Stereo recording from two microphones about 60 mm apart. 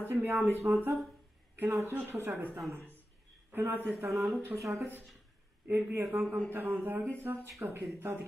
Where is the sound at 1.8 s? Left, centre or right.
Right.